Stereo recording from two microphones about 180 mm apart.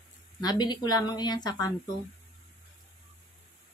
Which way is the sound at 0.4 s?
20° left (ahead or behind).